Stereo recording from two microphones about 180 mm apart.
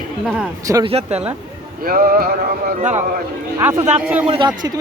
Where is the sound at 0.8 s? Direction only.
35° right (ahead or behind).